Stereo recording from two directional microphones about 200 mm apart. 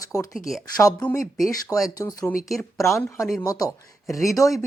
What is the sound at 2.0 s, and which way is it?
Speech, 15° left (ahead or behind).